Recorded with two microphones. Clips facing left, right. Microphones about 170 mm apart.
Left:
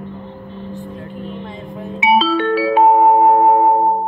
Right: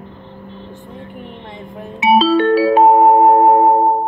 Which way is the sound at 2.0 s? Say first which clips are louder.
Right 3 dB; 40° right (ahead or behind).